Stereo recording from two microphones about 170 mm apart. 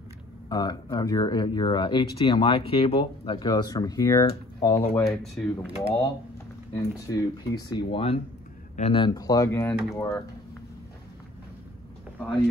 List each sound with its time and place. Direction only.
0.5 s speech: 25° left (ahead or behind)
5.2 s speech: 5° left (ahead or behind)
6.7 s speech: 20° left (ahead or behind)